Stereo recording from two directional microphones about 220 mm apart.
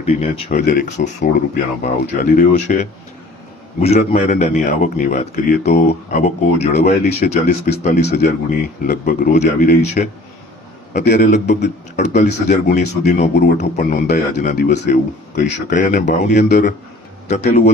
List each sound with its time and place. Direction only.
0.0 s a man's voice: 30° left (ahead or behind)
6.8 s a man's voice: 45° left (ahead or behind)
10.9 s a man's voice: 45° left (ahead or behind)
11.1 s a man's voice: 35° left (ahead or behind)